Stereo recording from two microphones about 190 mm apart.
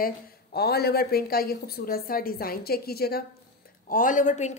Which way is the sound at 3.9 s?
45° left (ahead or behind).